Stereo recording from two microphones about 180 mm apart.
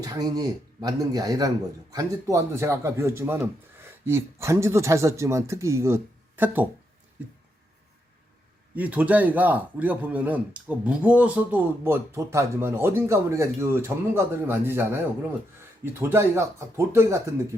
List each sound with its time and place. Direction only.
0.0 s speech: 20° right (ahead or behind)
8.7 s speech: 10° right (ahead or behind)